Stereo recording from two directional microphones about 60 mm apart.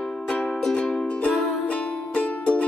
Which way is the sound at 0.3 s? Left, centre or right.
Centre.